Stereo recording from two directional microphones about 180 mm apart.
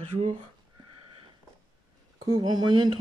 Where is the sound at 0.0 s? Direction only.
40° right (ahead or behind).